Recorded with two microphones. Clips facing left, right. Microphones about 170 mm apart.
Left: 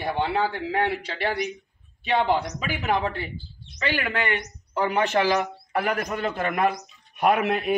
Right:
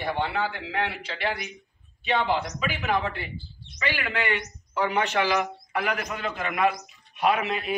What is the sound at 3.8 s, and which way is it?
A man's voice, 45° left (ahead or behind).